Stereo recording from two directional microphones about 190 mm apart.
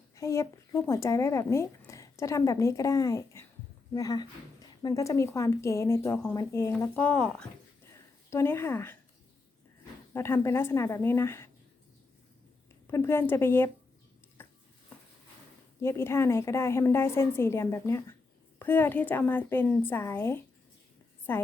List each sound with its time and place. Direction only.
0.2 s speech: 15° left (ahead or behind)
10.1 s speech: 15° left (ahead or behind)
12.9 s speech: 10° left (ahead or behind)
14.4 s a sound: 10° left (ahead or behind)
15.8 s speech: 15° left (ahead or behind)